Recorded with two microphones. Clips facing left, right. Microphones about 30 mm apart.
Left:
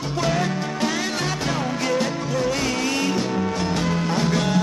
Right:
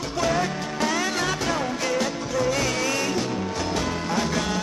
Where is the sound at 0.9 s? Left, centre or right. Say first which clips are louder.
Even; left.